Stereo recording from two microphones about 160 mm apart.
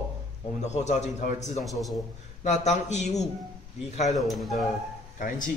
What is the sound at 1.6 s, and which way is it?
Speech, centre (ahead or behind).